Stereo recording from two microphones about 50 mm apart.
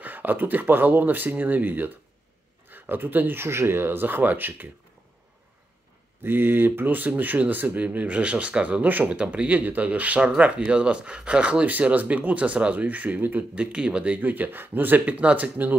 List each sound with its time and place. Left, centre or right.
0.0 s speech: right
6.2 s speech: right
8.8 s speech: right
9.1 s speech: right
11.6 s speech: right
13.6 s speech: right